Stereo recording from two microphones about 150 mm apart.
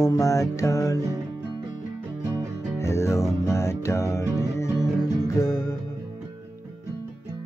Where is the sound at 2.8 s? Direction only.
20° left (ahead or behind).